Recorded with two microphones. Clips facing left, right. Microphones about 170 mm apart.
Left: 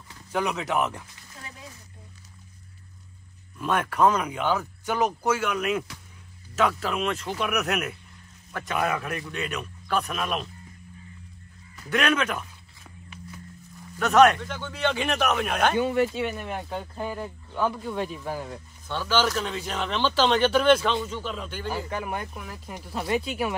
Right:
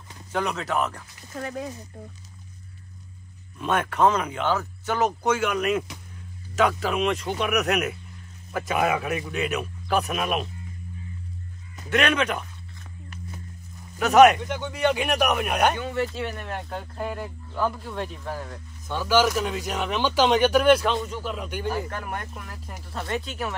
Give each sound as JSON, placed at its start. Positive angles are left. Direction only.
{"t": 0.3, "sound": "speech", "side_deg": 5}
{"t": 1.3, "sound": "speech", "side_deg": -65}
{"t": 3.5, "sound": "speech", "side_deg": 0}
{"t": 11.9, "sound": "speech", "side_deg": 0}
{"t": 13.9, "sound": "speech", "side_deg": -5}
{"t": 14.4, "sound": "speech", "side_deg": -20}
{"t": 15.8, "sound": "speech", "side_deg": 15}
{"t": 16.2, "sound": "speech", "side_deg": 5}
{"t": 18.9, "sound": "speech", "side_deg": -10}
{"t": 21.8, "sound": "speech", "side_deg": 5}